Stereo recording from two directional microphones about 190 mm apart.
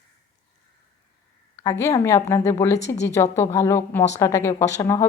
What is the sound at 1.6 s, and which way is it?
A woman's voice, 15° left (ahead or behind).